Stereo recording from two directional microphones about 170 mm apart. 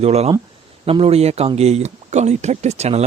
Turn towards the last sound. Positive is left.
turn(degrees=-40)  # may be behind; listen again after turning